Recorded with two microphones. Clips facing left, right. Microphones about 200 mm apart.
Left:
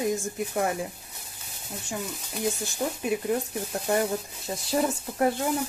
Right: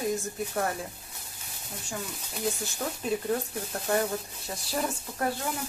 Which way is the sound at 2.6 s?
15° left (ahead or behind).